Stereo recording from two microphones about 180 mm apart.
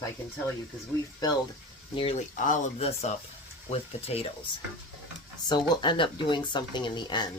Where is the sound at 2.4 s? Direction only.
40° left (ahead or behind).